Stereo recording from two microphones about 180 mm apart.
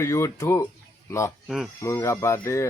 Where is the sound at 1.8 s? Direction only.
15° left (ahead or behind).